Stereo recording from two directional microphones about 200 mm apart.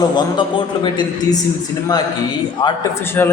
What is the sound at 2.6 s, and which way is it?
Speech, 15° left (ahead or behind).